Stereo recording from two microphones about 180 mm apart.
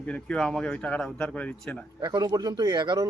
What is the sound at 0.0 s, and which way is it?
Speech, 5° left (ahead or behind).